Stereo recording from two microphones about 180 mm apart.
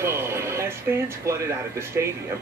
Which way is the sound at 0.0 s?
15° right (ahead or behind).